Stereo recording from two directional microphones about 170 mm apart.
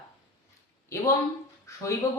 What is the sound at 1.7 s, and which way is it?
Speech, 15° left (ahead or behind).